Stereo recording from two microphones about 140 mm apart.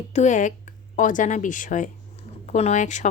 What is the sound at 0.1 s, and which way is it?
Speech, 55° left (ahead or behind).